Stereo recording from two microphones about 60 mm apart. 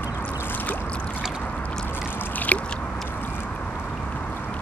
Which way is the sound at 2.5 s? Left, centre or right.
Left.